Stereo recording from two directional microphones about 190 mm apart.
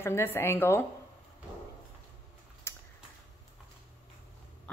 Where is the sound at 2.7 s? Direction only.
15° left (ahead or behind).